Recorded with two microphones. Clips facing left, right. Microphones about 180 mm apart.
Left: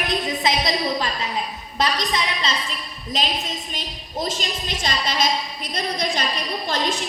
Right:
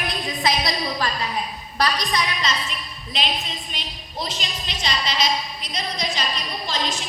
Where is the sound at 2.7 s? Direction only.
40° left (ahead or behind).